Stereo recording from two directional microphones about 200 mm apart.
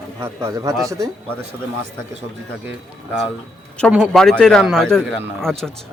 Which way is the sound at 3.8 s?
Centre (ahead or behind).